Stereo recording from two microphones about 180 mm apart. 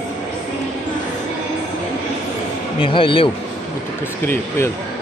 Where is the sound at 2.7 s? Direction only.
30° left (ahead or behind).